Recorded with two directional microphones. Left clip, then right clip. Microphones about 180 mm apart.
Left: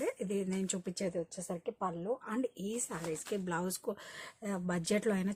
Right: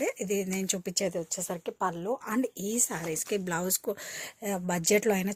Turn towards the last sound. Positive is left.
turn(degrees=-25)  # may be behind; listen again after turning